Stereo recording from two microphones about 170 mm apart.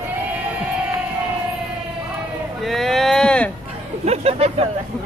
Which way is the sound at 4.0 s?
40° right (ahead or behind).